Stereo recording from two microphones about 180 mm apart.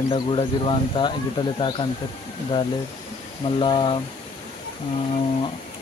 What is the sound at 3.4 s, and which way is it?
Speech, 25° left (ahead or behind).